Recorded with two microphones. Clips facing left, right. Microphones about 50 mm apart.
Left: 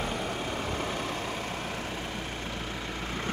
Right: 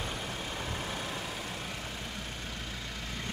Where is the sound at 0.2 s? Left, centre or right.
Left.